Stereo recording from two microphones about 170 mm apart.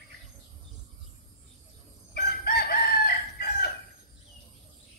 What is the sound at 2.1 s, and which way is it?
Chicken, 65° left (ahead or behind).